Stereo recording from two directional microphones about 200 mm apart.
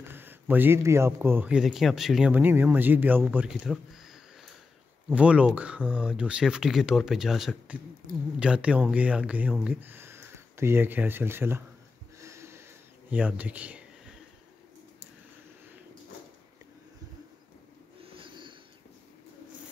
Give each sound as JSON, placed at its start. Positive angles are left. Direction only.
{"t": 0.1, "sound": "speech", "side_deg": -10}
{"t": 12.2, "sound": "a sound", "side_deg": -15}
{"t": 13.1, "sound": "speech", "side_deg": -5}
{"t": 18.0, "sound": "snort", "side_deg": -25}